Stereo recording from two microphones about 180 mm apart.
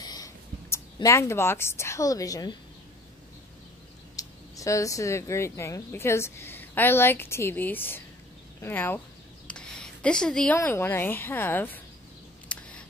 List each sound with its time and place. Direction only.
0.0 s speech: 20° left (ahead or behind)
4.2 s a woman's voice: 20° left (ahead or behind)
12.5 s a sound: 5° left (ahead or behind)